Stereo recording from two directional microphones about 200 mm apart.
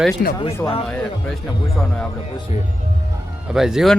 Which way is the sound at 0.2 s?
50° left (ahead or behind).